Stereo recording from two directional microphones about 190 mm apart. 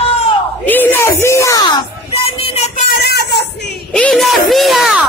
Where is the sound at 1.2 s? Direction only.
15° left (ahead or behind); by 2.7 s 35° left (ahead or behind).